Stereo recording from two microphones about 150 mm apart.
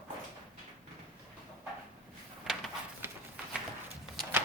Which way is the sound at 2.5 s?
Centre (ahead or behind).